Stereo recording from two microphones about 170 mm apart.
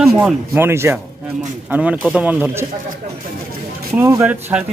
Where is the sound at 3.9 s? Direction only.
15° right (ahead or behind).